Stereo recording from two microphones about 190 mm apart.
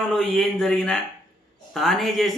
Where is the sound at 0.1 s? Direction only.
Centre (ahead or behind).